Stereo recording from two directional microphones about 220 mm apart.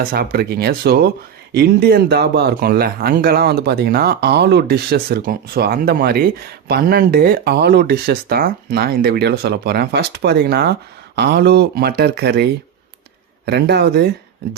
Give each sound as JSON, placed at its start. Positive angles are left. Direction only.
{"t": 0.1, "sound": "speech", "side_deg": -45}